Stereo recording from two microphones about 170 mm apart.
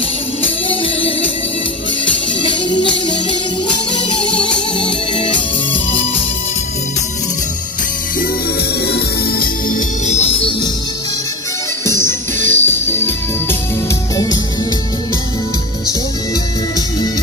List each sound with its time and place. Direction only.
4.4 s music: 30° left (ahead or behind)
8.8 s music: 65° left (ahead or behind); by 10.7 s 30° left (ahead or behind)
12.4 s music: 45° right (ahead or behind)
12.6 s music: 15° left (ahead or behind)